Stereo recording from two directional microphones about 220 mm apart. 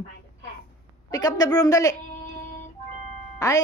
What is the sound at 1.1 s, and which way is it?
Speech, 15° left (ahead or behind).